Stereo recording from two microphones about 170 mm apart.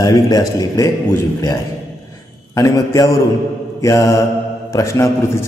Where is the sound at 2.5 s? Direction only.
20° left (ahead or behind).